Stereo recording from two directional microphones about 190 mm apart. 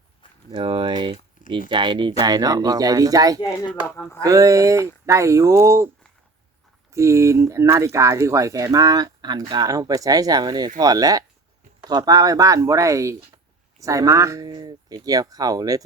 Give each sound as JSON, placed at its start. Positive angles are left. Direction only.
{"t": 0.5, "sound": "speech", "side_deg": -25}
{"t": 3.4, "sound": "speech", "side_deg": 20}
{"t": 4.2, "sound": "speech", "side_deg": -15}
{"t": 6.9, "sound": "speech", "side_deg": -15}